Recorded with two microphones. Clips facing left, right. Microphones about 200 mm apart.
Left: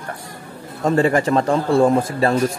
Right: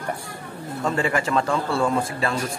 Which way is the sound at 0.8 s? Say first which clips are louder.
Left 7 dB; 40° left (ahead or behind).